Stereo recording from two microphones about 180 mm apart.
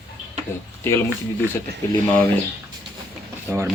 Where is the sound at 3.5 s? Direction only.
10° right (ahead or behind).